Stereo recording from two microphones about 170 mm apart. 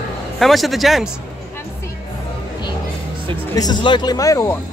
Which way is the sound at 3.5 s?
25° left (ahead or behind).